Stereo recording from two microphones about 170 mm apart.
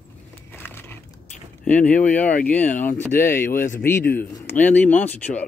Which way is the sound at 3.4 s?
50° left (ahead or behind).